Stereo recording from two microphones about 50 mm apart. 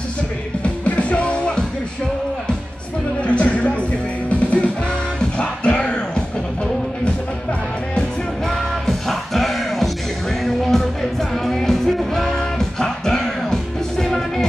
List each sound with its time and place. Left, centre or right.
0.8 s music: left
3.3 s music: left
8.5 s music: centre